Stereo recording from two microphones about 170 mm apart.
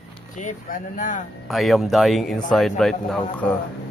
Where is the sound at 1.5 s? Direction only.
Centre (ahead or behind).